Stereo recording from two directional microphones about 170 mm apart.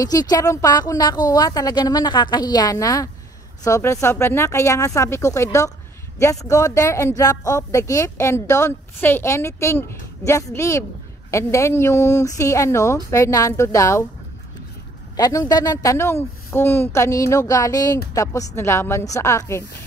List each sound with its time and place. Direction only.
0.0 s a woman's voice: 20° left (ahead or behind)
15.1 s a woman's voice: 20° left (ahead or behind)